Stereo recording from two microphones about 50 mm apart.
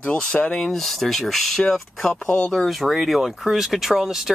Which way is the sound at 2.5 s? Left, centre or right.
Centre.